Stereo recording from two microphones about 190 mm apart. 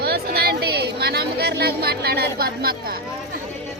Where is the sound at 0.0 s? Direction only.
55° right (ahead or behind).